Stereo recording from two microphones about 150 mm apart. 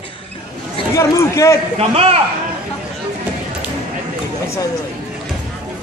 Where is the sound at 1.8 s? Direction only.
40° right (ahead or behind).